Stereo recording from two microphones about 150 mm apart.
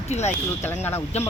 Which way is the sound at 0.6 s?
15° left (ahead or behind).